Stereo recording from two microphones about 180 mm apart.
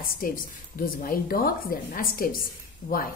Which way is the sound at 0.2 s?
50° left (ahead or behind).